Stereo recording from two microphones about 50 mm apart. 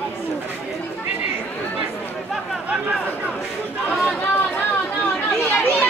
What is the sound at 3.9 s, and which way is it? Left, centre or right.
Chatter, left.